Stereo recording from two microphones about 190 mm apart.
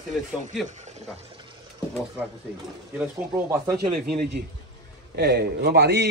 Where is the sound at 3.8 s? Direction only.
55° right (ahead or behind).